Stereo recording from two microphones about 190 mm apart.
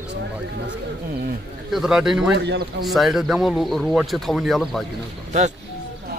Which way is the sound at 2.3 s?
65° right (ahead or behind).